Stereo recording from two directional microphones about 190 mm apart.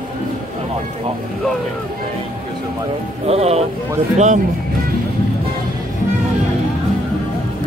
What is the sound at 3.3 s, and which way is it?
Speech, 35° right (ahead or behind).